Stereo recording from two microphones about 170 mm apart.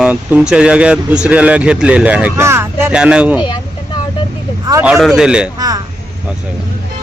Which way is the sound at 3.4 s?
25° left (ahead or behind).